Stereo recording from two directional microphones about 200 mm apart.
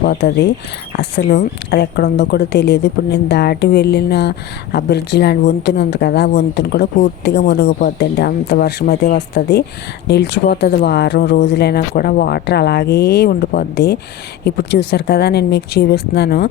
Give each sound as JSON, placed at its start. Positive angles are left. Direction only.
{"t": 0.0, "sound": "speech", "side_deg": 55}